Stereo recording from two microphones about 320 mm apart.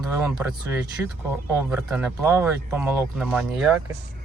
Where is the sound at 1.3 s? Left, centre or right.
Centre.